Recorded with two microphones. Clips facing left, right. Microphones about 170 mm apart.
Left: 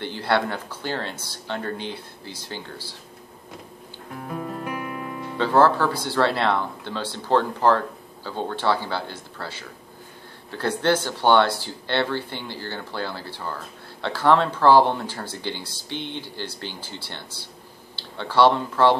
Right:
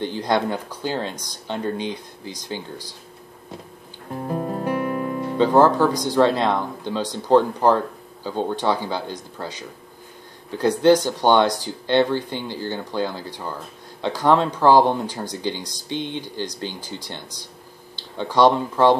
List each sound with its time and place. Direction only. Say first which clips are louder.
0.0 s speech: right 2 dB; 15° right (ahead or behind)
4.3 s music: right 6 dB; 35° right (ahead or behind)
5.4 s speech: right 3 dB; 15° right (ahead or behind)